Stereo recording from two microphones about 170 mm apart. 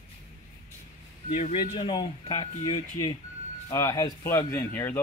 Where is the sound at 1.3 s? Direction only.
40° left (ahead or behind); by 5.0 s 10° left (ahead or behind).